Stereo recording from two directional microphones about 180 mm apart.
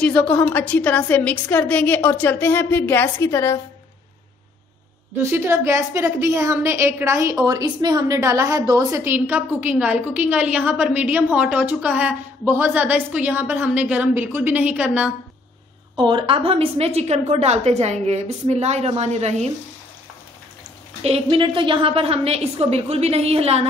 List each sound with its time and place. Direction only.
0.0 s a woman's voice: 10° left (ahead or behind)
5.2 s a woman's voice: 15° right (ahead or behind)
16.0 s a woman's voice: 25° right (ahead or behind)
21.0 s a woman's voice: 30° right (ahead or behind)